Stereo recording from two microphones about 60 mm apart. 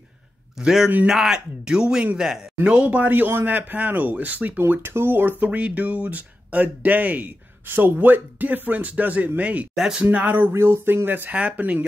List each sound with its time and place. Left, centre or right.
0.6 s speech: centre
2.6 s speech: right
9.8 s speech: centre
10.0 s speech: right